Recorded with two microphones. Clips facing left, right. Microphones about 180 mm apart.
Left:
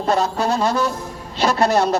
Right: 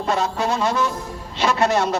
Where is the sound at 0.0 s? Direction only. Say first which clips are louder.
Left 3 dB; 35° left (ahead or behind).